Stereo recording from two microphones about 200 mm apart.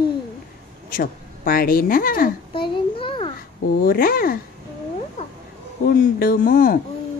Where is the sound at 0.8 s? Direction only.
45° left (ahead or behind).